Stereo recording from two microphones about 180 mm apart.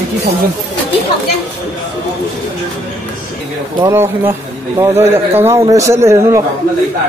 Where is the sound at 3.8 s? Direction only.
15° right (ahead or behind).